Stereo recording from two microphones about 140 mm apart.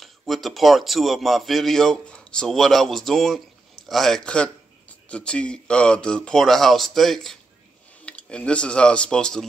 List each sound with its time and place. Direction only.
0.0 s a man's voice: centre (ahead or behind)